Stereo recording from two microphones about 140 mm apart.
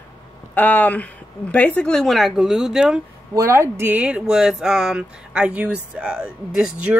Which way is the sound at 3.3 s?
20° right (ahead or behind).